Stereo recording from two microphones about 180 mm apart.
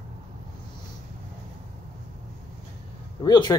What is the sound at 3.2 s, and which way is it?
Speech, 25° left (ahead or behind).